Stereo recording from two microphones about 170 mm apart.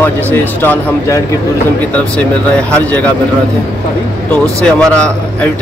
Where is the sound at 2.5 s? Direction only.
5° left (ahead or behind).